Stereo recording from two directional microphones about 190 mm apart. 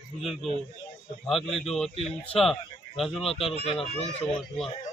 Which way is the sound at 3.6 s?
30° left (ahead or behind).